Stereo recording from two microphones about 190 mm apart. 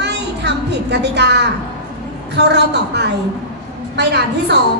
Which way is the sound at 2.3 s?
65° right (ahead or behind).